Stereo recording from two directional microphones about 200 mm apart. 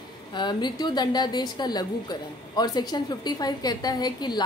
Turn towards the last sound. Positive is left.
turn(degrees=20)  # may be behind; listen again after turning